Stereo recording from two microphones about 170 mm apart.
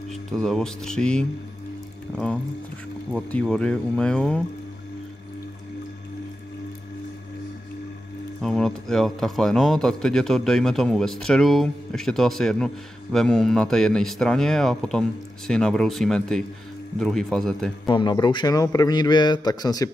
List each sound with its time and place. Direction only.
0.3 s speech: 5° left (ahead or behind)
3.1 s speech: 5° left (ahead or behind)
8.4 s speech: 5° left (ahead or behind)
17.8 s a man's voice: 25° left (ahead or behind)